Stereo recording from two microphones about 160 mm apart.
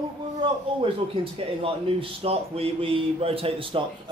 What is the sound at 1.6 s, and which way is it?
Speech, 35° right (ahead or behind).